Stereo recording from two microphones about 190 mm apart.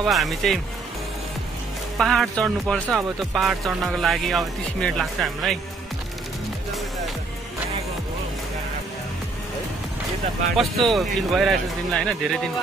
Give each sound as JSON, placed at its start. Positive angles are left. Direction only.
{"t": 0.0, "sound": "speech", "side_deg": 0}
{"t": 2.0, "sound": "speech", "side_deg": 0}
{"t": 10.5, "sound": "speech", "side_deg": 0}